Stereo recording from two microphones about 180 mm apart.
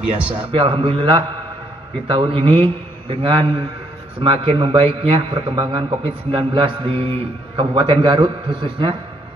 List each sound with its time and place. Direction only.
0.3 s a man's voice: 30° right (ahead or behind)